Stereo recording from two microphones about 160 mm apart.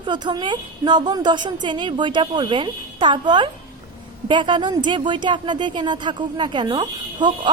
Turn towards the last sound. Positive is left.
turn(degrees=-30)  # may be behind; listen again after turning